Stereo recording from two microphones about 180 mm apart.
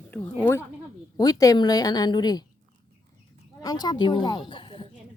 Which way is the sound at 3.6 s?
25° left (ahead or behind).